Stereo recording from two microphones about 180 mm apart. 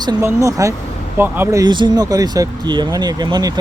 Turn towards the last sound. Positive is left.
turn(degrees=-20)  # may be behind; listen again after turning